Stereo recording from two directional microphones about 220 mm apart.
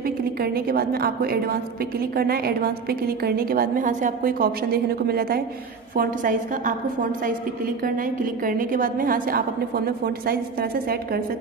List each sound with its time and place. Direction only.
0.4 s a woman's voice: 45° right (ahead or behind)
7.8 s a woman's voice: 40° right (ahead or behind)